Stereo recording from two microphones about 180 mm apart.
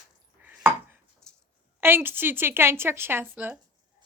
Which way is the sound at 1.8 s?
10° right (ahead or behind).